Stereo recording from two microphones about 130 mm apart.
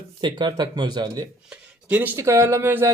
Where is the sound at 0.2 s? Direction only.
35° right (ahead or behind).